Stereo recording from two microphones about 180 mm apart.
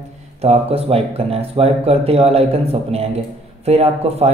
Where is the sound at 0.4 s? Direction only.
35° right (ahead or behind).